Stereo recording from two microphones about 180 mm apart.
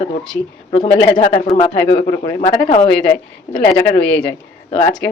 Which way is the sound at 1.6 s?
35° left (ahead or behind).